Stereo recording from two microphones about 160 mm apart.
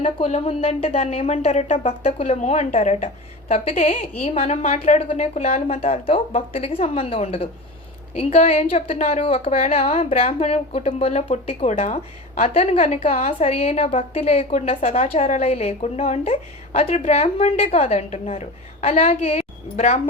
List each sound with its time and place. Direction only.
0.0 s a woman's voice: 40° left (ahead or behind)